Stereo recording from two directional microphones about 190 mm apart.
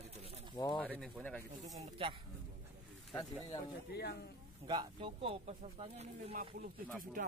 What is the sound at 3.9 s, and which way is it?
Speech, 55° left (ahead or behind).